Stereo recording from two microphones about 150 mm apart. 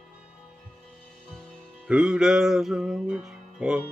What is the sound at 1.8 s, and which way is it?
Music, 5° right (ahead or behind).